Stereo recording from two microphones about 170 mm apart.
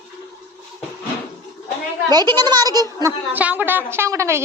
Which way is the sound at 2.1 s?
25° right (ahead or behind).